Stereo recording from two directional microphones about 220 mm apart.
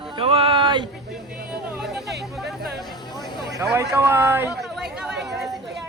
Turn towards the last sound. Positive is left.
turn(degrees=0)  # may be behind; listen again after turning